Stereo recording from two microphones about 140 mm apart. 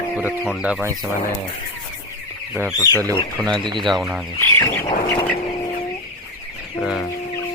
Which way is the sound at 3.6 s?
35° right (ahead or behind).